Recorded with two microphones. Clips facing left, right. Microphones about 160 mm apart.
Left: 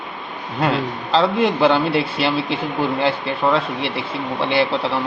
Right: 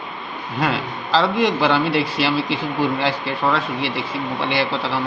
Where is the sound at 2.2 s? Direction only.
Centre (ahead or behind).